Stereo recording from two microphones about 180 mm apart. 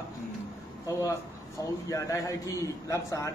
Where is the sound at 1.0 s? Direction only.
20° left (ahead or behind).